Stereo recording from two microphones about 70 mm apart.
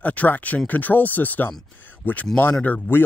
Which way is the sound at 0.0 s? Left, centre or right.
Left.